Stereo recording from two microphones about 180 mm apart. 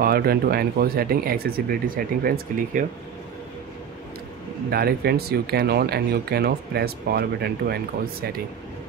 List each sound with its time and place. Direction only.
0.0 s speech: 60° right (ahead or behind)
4.6 s speech: 60° right (ahead or behind)